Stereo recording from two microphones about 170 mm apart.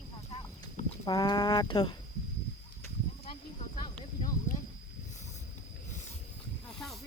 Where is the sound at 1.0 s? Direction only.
25° left (ahead or behind).